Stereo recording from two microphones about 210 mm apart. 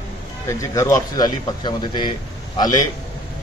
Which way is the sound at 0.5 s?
15° left (ahead or behind).